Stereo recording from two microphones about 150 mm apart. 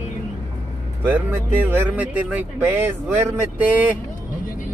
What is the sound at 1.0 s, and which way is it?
Speech, 10° right (ahead or behind).